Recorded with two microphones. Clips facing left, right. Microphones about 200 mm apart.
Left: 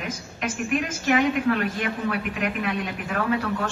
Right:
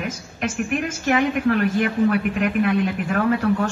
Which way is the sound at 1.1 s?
50° right (ahead or behind).